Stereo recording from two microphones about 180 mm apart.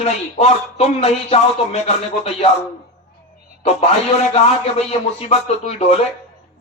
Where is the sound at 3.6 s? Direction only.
35° left (ahead or behind).